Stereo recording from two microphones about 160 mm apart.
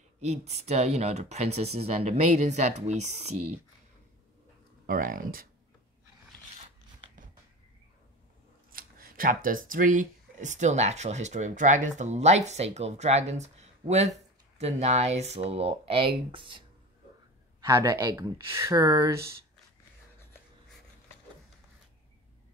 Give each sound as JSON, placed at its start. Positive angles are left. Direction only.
{"t": 0.2, "sound": "speech", "side_deg": -45}
{"t": 4.8, "sound": "speech", "side_deg": -60}
{"t": 8.7, "sound": "speech", "side_deg": -65}
{"t": 17.6, "sound": "speech", "side_deg": -20}